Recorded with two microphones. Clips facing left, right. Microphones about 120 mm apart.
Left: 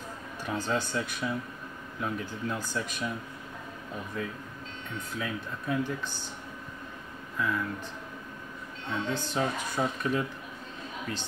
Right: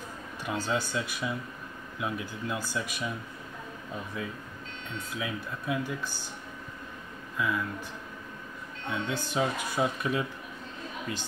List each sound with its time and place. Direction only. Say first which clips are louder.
0.5 s speech: even; 10° right (ahead or behind)
5.1 s speech: even; 5° right (ahead or behind)
7.3 s speech: even; 5° right (ahead or behind)
8.9 s speech: even; 5° right (ahead or behind)